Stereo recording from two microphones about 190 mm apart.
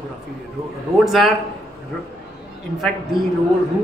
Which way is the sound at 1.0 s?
Centre (ahead or behind).